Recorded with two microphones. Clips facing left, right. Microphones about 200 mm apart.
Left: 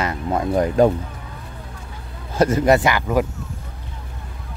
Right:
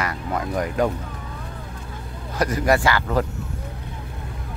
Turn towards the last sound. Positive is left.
turn(degrees=15)  # may be behind; listen again after turning